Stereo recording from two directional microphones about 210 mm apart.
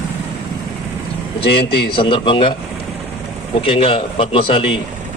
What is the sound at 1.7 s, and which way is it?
Speech, 50° left (ahead or behind).